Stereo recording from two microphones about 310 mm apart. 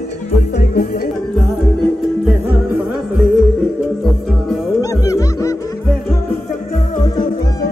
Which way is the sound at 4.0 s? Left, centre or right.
Centre.